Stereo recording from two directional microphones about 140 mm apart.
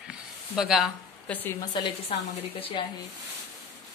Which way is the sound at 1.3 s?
15° left (ahead or behind).